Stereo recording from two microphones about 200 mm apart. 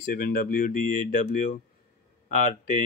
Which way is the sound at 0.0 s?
45° left (ahead or behind).